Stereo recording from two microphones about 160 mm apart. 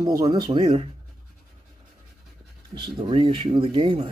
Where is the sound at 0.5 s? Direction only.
35° right (ahead or behind).